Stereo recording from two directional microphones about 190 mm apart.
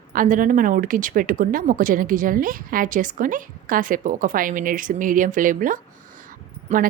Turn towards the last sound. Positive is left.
turn(degrees=-35)  # may be behind; listen again after turning